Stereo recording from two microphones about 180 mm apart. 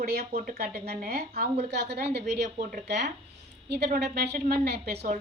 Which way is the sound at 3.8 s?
60° right (ahead or behind).